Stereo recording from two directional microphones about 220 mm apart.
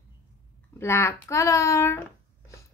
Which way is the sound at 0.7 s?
10° left (ahead or behind).